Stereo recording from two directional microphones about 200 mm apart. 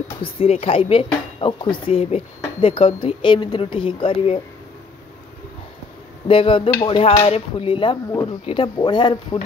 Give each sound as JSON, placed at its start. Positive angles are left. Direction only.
{"t": 0.2, "sound": "speech", "side_deg": 30}
{"t": 6.2, "sound": "speech", "side_deg": 25}